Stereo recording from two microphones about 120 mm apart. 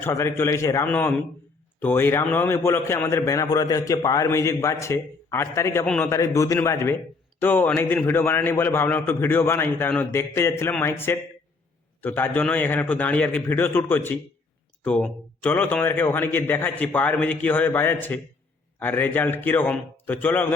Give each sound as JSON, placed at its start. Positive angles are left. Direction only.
{"t": 0.0, "sound": "a man's voice", "side_deg": 20}
{"t": 5.8, "sound": "a man's voice", "side_deg": 5}
{"t": 6.1, "sound": "a man's voice", "side_deg": 25}